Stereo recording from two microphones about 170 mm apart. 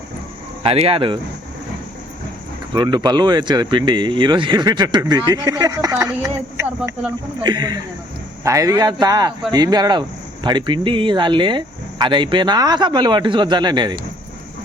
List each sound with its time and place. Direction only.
0.6 s speech: 35° right (ahead or behind)
2.7 s speech: 25° right (ahead or behind)